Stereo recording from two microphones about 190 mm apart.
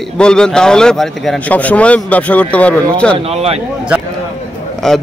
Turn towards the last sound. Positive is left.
turn(degrees=0)  # may be behind; listen again after turning